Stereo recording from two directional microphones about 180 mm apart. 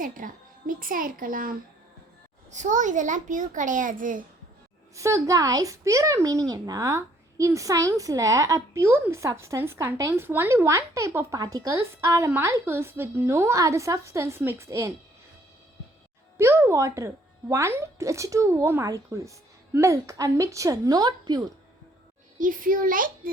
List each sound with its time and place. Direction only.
0.0 s a child's voice: 50° right (ahead or behind)
4.9 s a child's voice: 15° right (ahead or behind)
16.4 s a child's voice: 15° right (ahead or behind)
22.4 s a child's voice: 50° right (ahead or behind)